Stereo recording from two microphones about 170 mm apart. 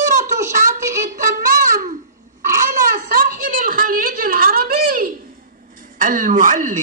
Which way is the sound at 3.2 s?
55° right (ahead or behind).